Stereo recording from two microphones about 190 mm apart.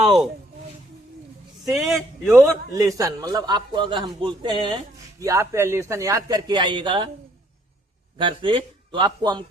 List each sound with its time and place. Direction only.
0.0 s speech: centre (ahead or behind)
1.6 s speech: centre (ahead or behind)
2.4 s a man's voice: 15° right (ahead or behind)
8.2 s a man's voice: 25° right (ahead or behind)